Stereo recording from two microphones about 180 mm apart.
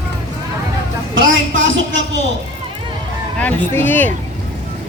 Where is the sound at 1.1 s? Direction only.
90° right.